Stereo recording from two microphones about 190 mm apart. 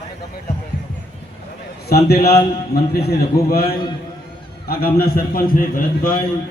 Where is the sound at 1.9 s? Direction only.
55° left (ahead or behind).